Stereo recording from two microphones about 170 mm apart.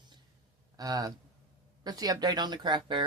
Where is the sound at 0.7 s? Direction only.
20° right (ahead or behind).